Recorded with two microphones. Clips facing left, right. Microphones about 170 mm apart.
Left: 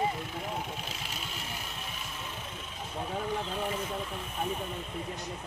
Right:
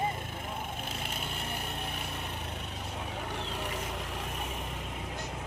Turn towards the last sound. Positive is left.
turn(degrees=-85)